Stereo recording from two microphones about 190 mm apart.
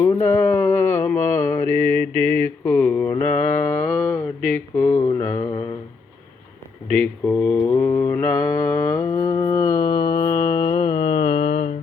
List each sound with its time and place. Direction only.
0.3 s mantra: 10° left (ahead or behind)
1.6 s mantra: 35° right (ahead or behind)
2.6 s mantra: 10° left (ahead or behind)
4.7 s a sound: 15° left (ahead or behind)
6.8 s mantra: 5° left (ahead or behind); by 11.7 s 35° left (ahead or behind)